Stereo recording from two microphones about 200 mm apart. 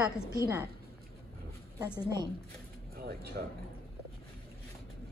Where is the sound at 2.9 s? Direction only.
50° right (ahead or behind).